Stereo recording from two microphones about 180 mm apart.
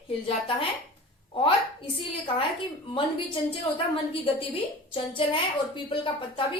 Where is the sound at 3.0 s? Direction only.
30° left (ahead or behind).